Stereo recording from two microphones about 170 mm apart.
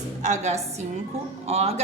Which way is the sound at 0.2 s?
45° right (ahead or behind).